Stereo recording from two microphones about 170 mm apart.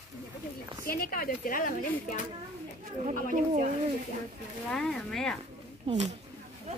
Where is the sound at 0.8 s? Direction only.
60° left (ahead or behind).